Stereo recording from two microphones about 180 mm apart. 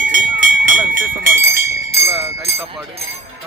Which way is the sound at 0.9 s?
55° right (ahead or behind).